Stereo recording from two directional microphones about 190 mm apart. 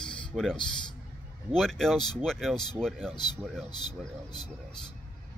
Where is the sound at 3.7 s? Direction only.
20° left (ahead or behind).